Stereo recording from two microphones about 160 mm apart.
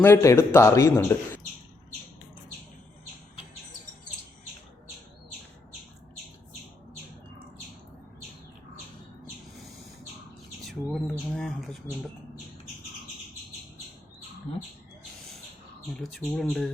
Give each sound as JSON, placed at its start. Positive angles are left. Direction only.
{"t": 0.0, "sound": "a man's voice", "side_deg": 15}
{"t": 10.7, "sound": "a sound", "side_deg": 0}
{"t": 15.9, "sound": "speech", "side_deg": 0}